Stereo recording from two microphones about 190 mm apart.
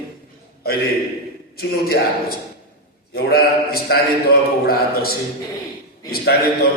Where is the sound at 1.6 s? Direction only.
55° left (ahead or behind).